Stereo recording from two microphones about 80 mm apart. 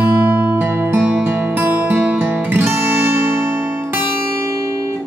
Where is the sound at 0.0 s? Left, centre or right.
Right.